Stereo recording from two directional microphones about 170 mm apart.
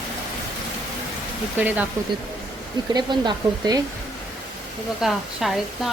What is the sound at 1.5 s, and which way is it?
Speech, 10° right (ahead or behind).